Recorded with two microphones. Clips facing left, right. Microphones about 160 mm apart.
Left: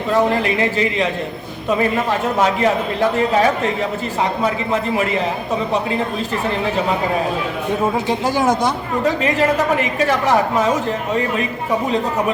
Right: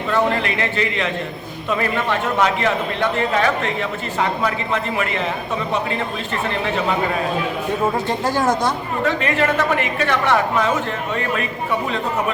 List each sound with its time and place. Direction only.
1.8 s a woman's voice: 35° left (ahead or behind)
8.2 s a woman's voice: 15° left (ahead or behind)
9.0 s a woman's voice: 35° left (ahead or behind)